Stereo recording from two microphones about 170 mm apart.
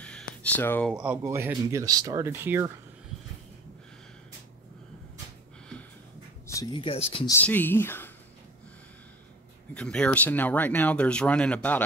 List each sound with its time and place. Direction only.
0.0 s a sound: 10° left (ahead or behind)
0.8 s speech: 5° right (ahead or behind)
6.4 s speech: 20° left (ahead or behind)
7.2 s speech: 10° left (ahead or behind)
9.8 s speech: 5° left (ahead or behind)